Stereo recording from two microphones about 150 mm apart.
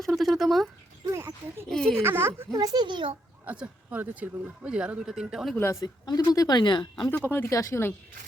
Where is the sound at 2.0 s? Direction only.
15° right (ahead or behind); by 3.2 s 35° right (ahead or behind).